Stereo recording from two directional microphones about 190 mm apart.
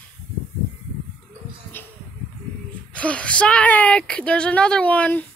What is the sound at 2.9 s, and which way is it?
A woman's voice, 5° left (ahead or behind).